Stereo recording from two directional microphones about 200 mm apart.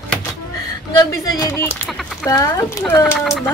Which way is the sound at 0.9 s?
20° left (ahead or behind).